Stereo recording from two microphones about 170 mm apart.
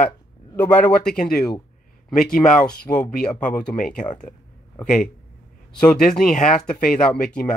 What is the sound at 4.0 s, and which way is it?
Speech, 50° left (ahead or behind).